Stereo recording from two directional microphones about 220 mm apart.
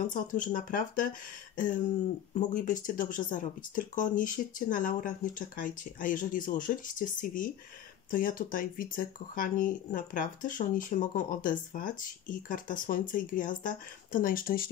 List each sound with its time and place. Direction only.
0.0 s speech: 35° left (ahead or behind)
2.3 s speech: 35° left (ahead or behind)